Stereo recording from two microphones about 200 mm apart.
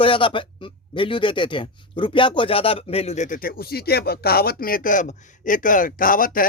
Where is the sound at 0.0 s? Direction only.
25° left (ahead or behind).